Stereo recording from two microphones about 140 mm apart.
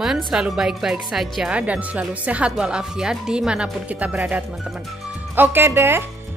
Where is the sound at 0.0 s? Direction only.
5° right (ahead or behind).